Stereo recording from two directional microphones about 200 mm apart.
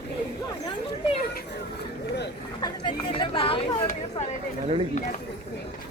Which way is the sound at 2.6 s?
25° left (ahead or behind).